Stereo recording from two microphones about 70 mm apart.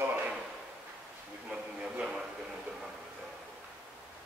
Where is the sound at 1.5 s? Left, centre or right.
Centre.